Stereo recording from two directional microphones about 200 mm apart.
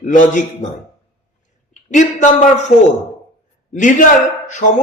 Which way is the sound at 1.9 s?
40° left (ahead or behind).